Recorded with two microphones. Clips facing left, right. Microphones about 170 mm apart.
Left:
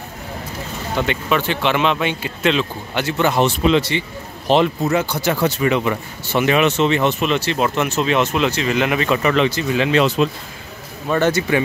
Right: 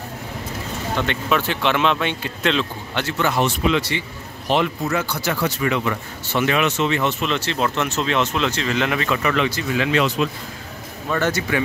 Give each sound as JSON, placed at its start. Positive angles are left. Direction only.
{"t": 0.9, "sound": "speech", "side_deg": 5}
{"t": 3.2, "sound": "speech", "side_deg": 25}